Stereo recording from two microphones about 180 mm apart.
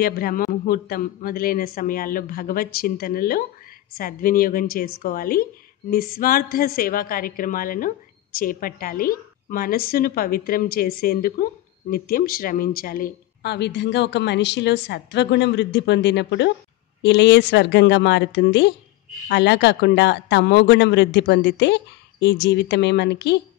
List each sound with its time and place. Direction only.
0.0 s a man's voice: 55° left (ahead or behind)